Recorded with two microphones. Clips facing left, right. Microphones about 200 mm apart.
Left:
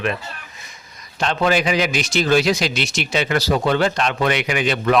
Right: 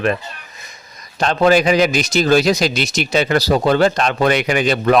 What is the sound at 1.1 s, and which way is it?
A man's voice, 40° right (ahead or behind).